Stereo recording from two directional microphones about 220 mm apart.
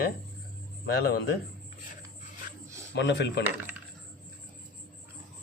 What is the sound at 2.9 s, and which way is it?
Speech, 55° left (ahead or behind).